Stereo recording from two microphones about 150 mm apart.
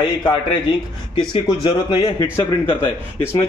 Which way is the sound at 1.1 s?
35° left (ahead or behind).